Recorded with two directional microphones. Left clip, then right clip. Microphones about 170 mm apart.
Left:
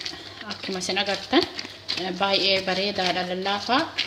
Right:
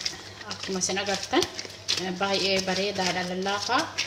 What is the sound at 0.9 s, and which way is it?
Speech, 50° left (ahead or behind).